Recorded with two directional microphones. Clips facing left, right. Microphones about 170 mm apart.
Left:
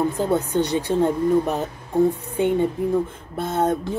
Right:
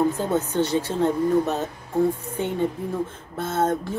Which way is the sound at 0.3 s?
15° left (ahead or behind).